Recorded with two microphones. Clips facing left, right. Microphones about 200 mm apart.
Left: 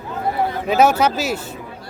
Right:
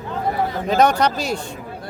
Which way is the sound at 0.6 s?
5° left (ahead or behind).